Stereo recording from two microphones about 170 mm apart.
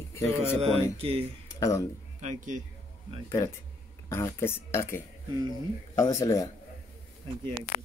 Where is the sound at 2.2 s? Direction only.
50° right (ahead or behind).